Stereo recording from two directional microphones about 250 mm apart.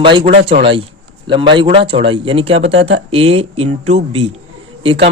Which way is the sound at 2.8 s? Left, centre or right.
Right.